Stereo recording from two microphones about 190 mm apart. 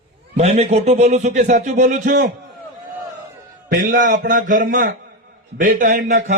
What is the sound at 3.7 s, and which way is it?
A man's voice, 50° right (ahead or behind).